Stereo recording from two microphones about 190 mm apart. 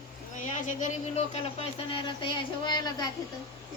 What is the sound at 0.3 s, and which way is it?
Speech, 40° left (ahead or behind).